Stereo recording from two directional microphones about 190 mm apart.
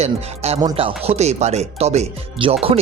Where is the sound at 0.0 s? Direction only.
35° right (ahead or behind).